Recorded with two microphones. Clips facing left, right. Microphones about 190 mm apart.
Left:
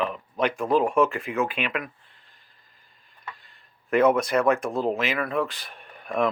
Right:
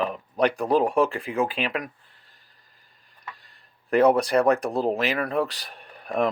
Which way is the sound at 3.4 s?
40° right (ahead or behind).